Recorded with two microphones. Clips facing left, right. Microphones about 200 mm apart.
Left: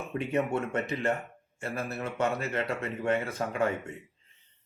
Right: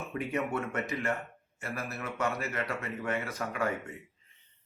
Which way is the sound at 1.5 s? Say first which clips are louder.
Left 4 dB; 30° left (ahead or behind).